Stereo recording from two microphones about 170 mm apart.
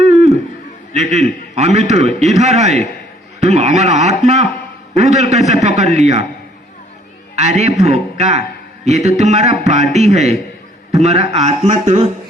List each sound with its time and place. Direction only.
0.0 s a sound: 40° right (ahead or behind)
0.9 s a man's voice: 40° right (ahead or behind)
7.3 s a man's voice: 40° right (ahead or behind)